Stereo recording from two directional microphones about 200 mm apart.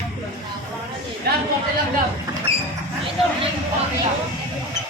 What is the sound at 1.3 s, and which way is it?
Speech, 50° right (ahead or behind).